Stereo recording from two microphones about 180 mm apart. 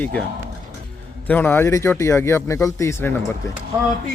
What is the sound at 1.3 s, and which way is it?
Speech, 10° left (ahead or behind).